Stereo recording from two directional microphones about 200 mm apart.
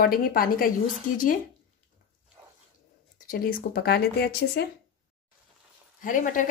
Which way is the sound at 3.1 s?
45° left (ahead or behind).